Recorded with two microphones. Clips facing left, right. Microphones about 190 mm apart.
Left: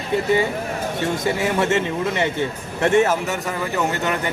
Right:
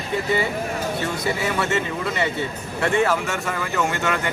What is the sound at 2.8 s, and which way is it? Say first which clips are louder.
Speech: left 3 dB; 20° left (ahead or behind).